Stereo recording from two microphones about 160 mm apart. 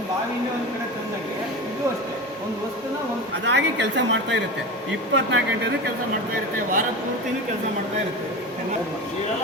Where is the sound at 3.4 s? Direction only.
90° right.